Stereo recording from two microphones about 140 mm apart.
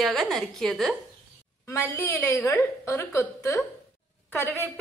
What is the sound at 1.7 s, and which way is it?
A woman's voice, 20° left (ahead or behind).